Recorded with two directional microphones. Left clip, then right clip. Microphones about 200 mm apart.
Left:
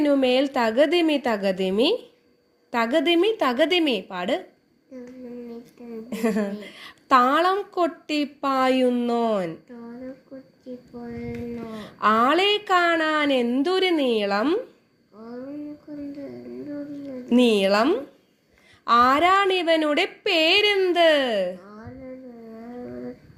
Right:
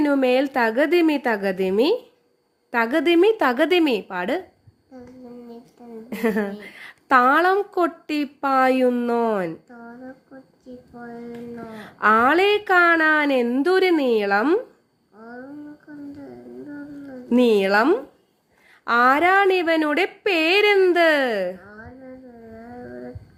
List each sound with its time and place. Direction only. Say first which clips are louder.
0.0 s a woman's voice: right 1 dB; 20° right (ahead or behind)
6.1 s a woman's voice: right 2 dB; 20° right (ahead or behind)
11.5 s a woman's voice: left 1 dB; 20° right (ahead or behind)
17.2 s a woman's voice: right 1 dB; 20° right (ahead or behind)